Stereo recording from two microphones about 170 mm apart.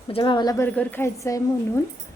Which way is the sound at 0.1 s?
30° left (ahead or behind).